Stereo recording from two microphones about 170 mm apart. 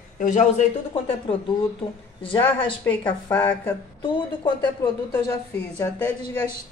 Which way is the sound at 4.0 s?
25° left (ahead or behind).